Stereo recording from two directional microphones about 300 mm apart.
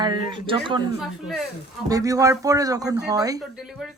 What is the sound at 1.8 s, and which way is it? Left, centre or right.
A woman's voice, centre.